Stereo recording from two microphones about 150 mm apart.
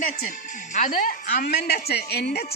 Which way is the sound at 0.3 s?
55° left (ahead or behind).